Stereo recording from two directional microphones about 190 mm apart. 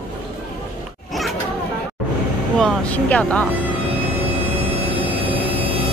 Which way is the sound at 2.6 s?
5° left (ahead or behind).